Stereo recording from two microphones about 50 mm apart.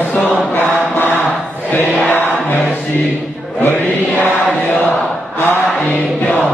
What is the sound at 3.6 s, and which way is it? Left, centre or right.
Chant, left.